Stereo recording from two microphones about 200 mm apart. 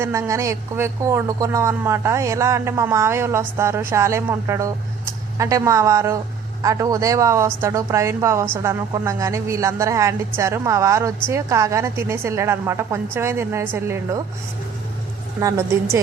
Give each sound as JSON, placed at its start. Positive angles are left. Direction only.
{"t": 0.0, "sound": "a woman's voice", "side_deg": -15}
{"t": 15.4, "sound": "a woman's voice", "side_deg": -15}